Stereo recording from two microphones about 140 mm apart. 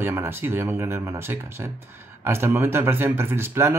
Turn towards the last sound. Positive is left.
turn(degrees=-20)  # may be behind; listen again after turning